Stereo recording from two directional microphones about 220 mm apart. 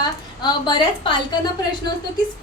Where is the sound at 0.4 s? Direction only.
20° left (ahead or behind).